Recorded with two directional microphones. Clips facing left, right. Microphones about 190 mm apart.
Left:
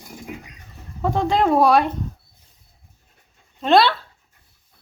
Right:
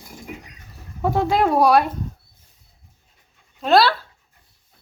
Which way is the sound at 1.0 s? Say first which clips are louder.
Even; 5° right (ahead or behind).